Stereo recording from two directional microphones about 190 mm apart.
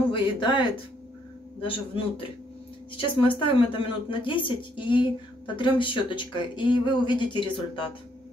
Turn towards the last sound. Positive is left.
turn(degrees=25)  # may be behind; listen again after turning